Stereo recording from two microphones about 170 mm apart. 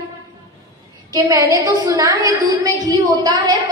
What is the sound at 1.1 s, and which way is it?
A woman's voice, 25° right (ahead or behind).